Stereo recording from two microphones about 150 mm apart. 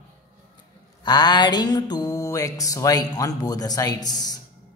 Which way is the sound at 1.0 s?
30° left (ahead or behind).